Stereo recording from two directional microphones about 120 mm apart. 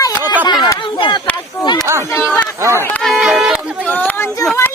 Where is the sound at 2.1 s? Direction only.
15° left (ahead or behind).